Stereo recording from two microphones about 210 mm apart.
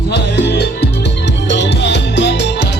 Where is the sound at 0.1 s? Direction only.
55° left (ahead or behind).